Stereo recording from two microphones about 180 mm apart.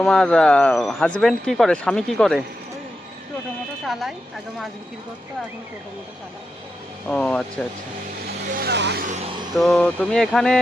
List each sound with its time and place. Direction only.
0.0 s speech: 5° left (ahead or behind)
7.1 s speech: 5° left (ahead or behind)
8.5 s speech: 65° right (ahead or behind)
9.6 s speech: centre (ahead or behind)